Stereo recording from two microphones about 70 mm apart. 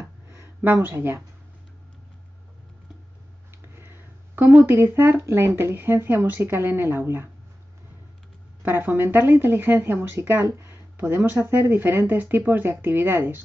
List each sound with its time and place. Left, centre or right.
0.8 s speech: right
3.6 s speech: right
8.6 s speech: right